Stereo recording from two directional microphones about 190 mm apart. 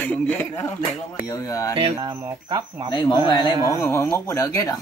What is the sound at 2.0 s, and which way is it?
Speech, 20° right (ahead or behind).